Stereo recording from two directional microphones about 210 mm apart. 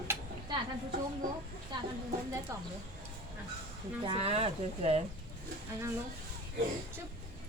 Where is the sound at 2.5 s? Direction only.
15° right (ahead or behind).